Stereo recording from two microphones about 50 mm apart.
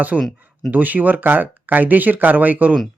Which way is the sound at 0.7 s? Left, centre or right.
Right.